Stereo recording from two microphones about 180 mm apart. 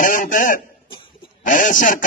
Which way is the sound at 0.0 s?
45° left (ahead or behind).